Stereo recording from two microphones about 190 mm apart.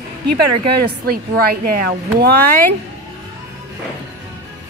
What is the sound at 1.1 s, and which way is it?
Speech, 50° right (ahead or behind).